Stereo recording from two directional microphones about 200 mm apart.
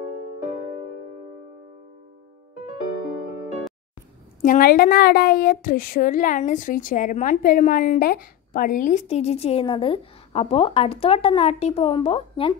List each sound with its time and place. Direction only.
4.4 s speech: 45° left (ahead or behind); by 12.5 s 25° left (ahead or behind)